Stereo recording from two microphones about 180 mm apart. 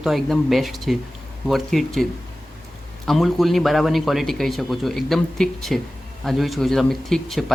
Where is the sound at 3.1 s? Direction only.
Centre (ahead or behind).